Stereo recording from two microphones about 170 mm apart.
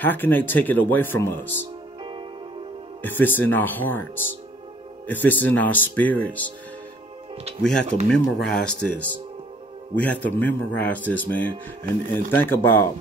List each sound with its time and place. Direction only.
0.0 s speech: 10° left (ahead or behind)
3.0 s speech: 10° left (ahead or behind)
8.1 s speech: 5° left (ahead or behind)
11.8 s speech: 50° right (ahead or behind)
12.3 s speech: 10° left (ahead or behind)